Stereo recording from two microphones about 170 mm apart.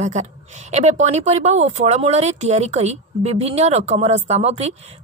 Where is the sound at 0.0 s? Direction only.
40° right (ahead or behind).